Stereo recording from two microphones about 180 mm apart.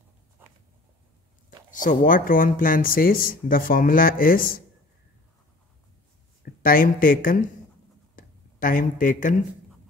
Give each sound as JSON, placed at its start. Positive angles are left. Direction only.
{"t": 1.7, "sound": "speech", "side_deg": 45}
{"t": 6.4, "sound": "speech", "side_deg": 50}
{"t": 8.2, "sound": "a sound", "side_deg": 50}